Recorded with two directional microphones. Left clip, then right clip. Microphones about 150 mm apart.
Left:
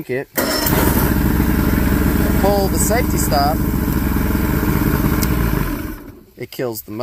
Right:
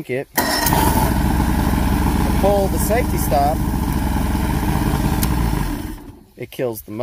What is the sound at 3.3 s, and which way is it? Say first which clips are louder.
Speech: even; 15° right (ahead or behind).